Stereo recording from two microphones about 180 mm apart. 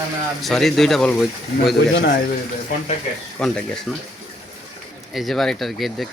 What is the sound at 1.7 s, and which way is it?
Speech, 65° left (ahead or behind).